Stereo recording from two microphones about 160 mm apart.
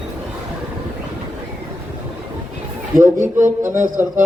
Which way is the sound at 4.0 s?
15° right (ahead or behind).